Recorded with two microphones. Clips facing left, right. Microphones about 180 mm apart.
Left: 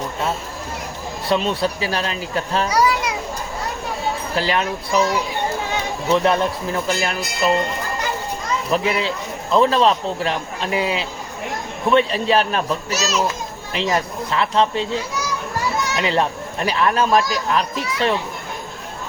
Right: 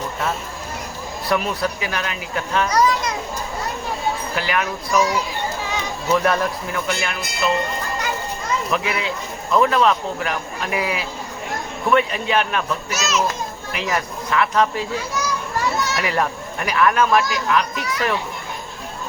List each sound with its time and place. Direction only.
1.3 s speech: 25° left (ahead or behind)
2.6 s children playing: 10° left (ahead or behind)
4.4 s speech: 30° left (ahead or behind)
6.1 s speech: 20° left (ahead or behind)
8.7 s a man's voice: 30° left (ahead or behind)
15.9 s a man's voice: 25° left (ahead or behind)